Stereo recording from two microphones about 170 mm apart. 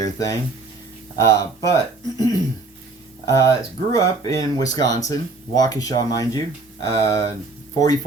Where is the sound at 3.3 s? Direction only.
20° left (ahead or behind).